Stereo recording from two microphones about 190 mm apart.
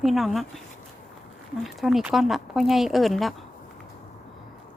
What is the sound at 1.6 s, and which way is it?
A woman's voice, centre (ahead or behind).